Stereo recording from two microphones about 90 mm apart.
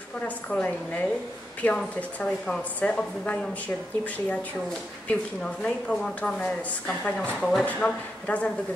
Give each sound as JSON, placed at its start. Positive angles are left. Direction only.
{"t": 0.5, "sound": "speech", "side_deg": 20}
{"t": 7.6, "sound": "speech", "side_deg": 15}